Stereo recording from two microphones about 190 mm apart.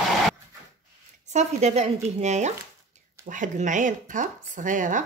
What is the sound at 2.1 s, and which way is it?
Chopping, 35° right (ahead or behind).